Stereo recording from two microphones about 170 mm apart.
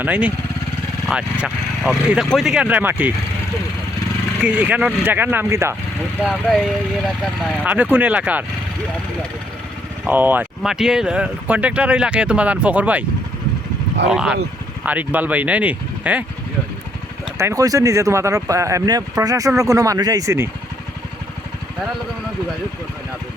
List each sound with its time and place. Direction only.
0.0 s speech: 10° right (ahead or behind)
4.4 s speech: 10° right (ahead or behind)
6.2 s speech: centre (ahead or behind)
10.1 s speech: 10° right (ahead or behind)
14.1 s speech: 5° right (ahead or behind)
17.3 s speech: 20° right (ahead or behind)